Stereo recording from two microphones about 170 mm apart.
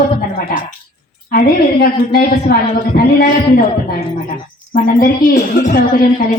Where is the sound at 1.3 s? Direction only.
60° left (ahead or behind).